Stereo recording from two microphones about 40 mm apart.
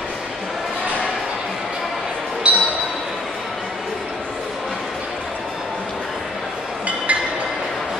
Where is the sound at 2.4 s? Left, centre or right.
Right.